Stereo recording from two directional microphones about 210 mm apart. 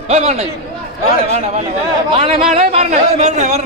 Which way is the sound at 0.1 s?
30° right (ahead or behind).